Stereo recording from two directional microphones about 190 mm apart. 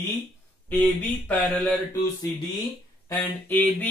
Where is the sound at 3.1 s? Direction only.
10° left (ahead or behind).